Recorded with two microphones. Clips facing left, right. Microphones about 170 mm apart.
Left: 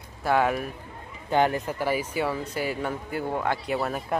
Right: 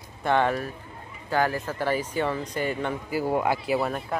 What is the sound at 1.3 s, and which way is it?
Speech, 20° left (ahead or behind).